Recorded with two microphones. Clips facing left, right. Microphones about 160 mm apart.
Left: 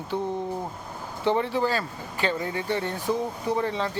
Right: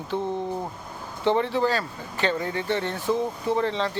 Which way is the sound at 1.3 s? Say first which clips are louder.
Right 2 dB; 15° left (ahead or behind).